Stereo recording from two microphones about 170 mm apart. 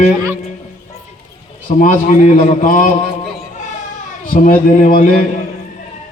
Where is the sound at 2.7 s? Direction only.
50° left (ahead or behind).